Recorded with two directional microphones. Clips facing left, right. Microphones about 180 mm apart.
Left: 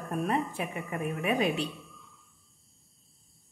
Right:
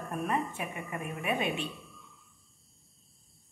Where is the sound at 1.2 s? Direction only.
40° left (ahead or behind).